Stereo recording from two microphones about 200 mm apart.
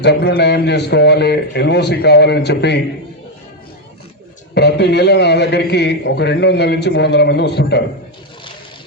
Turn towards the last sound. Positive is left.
turn(degrees=55)  # may be behind; listen again after turning